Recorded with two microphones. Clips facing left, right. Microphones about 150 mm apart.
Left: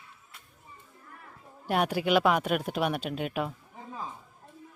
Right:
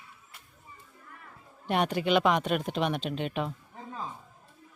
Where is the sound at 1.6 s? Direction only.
5° left (ahead or behind).